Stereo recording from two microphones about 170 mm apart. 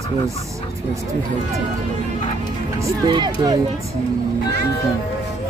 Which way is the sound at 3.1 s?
25° right (ahead or behind).